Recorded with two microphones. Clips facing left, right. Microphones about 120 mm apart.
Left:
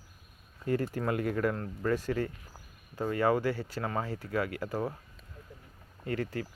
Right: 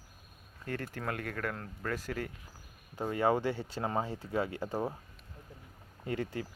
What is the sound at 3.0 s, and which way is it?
Speech, 15° right (ahead or behind).